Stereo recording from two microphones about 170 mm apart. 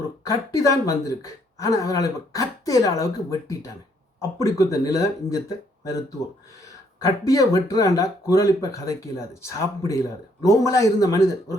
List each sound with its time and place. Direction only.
0.3 s speech: 20° left (ahead or behind)